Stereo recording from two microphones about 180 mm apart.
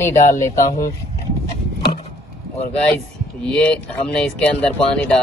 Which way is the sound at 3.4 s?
5° left (ahead or behind).